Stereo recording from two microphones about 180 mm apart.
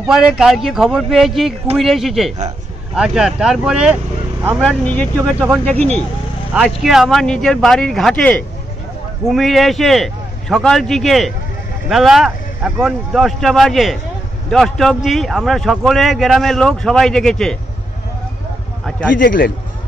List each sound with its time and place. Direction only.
0.1 s speech: 5° right (ahead or behind)
4.6 s speech: 5° left (ahead or behind)
6.5 s speech: centre (ahead or behind)
19.1 s a man's voice: 50° left (ahead or behind)